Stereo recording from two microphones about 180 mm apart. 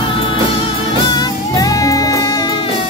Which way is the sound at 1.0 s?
25° left (ahead or behind).